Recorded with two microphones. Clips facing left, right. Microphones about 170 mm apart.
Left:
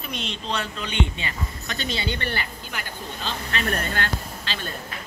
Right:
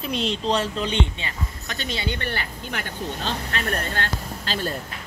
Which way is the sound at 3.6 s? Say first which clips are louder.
Left 2 dB; 30° right (ahead or behind).